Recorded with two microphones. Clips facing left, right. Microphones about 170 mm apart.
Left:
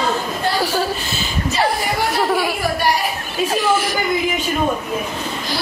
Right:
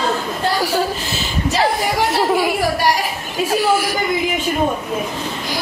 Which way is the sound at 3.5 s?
10° right (ahead or behind).